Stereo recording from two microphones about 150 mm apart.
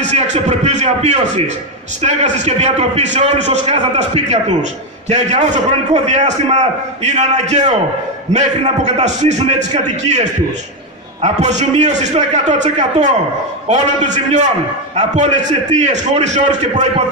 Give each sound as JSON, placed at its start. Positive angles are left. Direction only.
{"t": 0.1, "sound": "a sound", "side_deg": -50}
{"t": 2.0, "sound": "a man's voice", "side_deg": -50}
{"t": 11.2, "sound": "a man's voice", "side_deg": -50}